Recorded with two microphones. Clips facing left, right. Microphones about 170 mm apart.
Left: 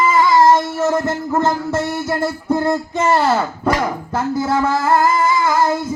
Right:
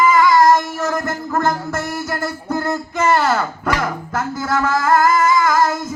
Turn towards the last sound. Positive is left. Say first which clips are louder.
# even
turn(degrees=30)  # may be behind; listen again after turning